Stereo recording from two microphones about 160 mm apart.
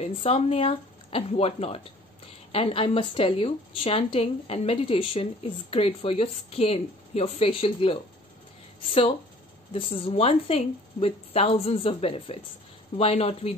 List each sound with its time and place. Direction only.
0.0 s a woman's voice: 40° left (ahead or behind)
9.7 s a woman's voice: 35° left (ahead or behind)